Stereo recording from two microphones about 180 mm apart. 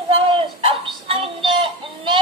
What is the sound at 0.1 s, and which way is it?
Music, 30° right (ahead or behind).